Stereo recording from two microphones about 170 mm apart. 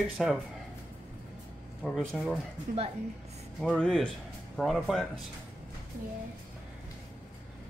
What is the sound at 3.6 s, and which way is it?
Speech, 5° left (ahead or behind).